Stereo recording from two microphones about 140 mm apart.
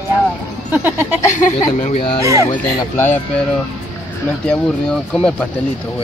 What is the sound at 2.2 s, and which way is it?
Speech, 20° right (ahead or behind).